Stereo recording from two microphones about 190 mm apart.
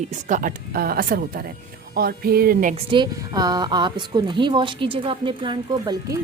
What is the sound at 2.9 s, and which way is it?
A woman's voice, 20° right (ahead or behind).